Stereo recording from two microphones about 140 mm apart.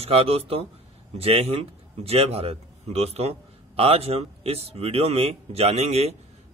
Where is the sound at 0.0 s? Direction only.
45° right (ahead or behind).